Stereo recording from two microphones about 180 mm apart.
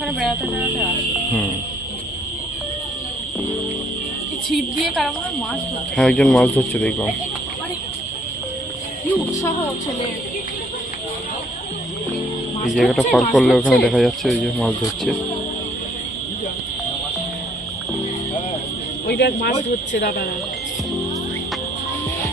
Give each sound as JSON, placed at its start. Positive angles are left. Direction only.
{"t": 4.5, "sound": "speech", "side_deg": 0}
{"t": 12.7, "sound": "speech", "side_deg": 0}
{"t": 19.0, "sound": "speech", "side_deg": 65}